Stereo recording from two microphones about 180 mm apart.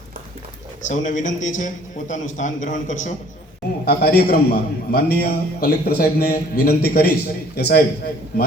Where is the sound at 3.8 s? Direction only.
60° left (ahead or behind).